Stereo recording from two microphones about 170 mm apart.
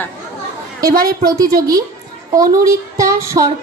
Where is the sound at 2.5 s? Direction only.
20° right (ahead or behind).